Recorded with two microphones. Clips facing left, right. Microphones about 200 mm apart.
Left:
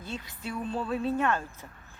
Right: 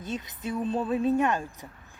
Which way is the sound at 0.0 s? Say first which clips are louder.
Right 4 dB; 20° right (ahead or behind).